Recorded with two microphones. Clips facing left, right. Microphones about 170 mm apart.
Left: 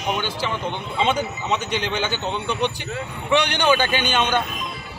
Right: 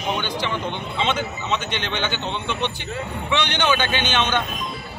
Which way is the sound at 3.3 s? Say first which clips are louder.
Left 3 dB; 10° left (ahead or behind).